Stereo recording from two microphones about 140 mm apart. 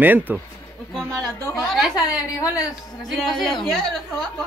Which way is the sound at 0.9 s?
5° left (ahead or behind).